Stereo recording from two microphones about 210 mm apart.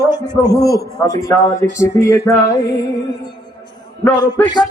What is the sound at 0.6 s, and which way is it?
Speech, 15° left (ahead or behind).